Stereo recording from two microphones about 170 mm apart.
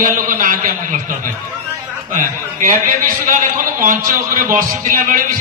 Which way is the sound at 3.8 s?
55° right (ahead or behind).